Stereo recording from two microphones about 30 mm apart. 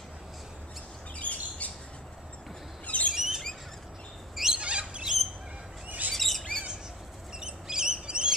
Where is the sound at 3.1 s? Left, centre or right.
Centre.